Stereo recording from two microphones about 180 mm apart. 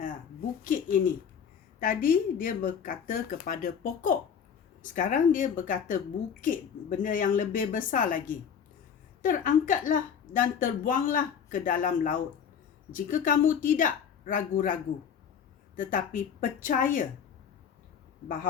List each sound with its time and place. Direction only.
0.6 s speech: 50° left (ahead or behind)